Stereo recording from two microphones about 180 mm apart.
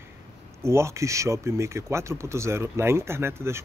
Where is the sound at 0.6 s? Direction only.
15° right (ahead or behind).